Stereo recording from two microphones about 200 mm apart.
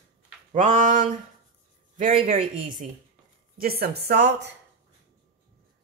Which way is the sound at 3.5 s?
50° right (ahead or behind).